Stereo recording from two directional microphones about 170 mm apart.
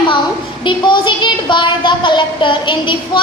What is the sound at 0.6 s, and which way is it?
A woman's voice, 30° left (ahead or behind).